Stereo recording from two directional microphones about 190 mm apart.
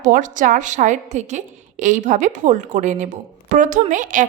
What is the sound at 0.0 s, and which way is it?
A woman's voice, 40° right (ahead or behind).